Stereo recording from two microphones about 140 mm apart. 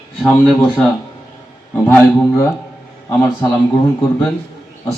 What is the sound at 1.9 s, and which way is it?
Speech, 15° left (ahead or behind).